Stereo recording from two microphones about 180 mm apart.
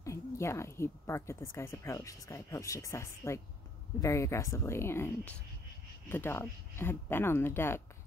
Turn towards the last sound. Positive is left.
turn(degrees=15)  # may be behind; listen again after turning